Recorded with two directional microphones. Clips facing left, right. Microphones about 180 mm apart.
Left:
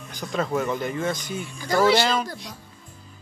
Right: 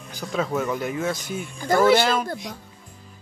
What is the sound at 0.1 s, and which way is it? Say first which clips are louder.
A man's voice: even; 5° right (ahead or behind).